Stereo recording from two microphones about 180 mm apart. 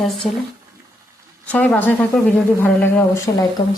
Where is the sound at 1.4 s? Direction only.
5° left (ahead or behind).